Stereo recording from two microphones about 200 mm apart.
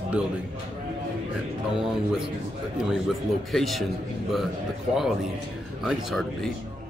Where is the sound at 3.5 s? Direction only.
Centre (ahead or behind).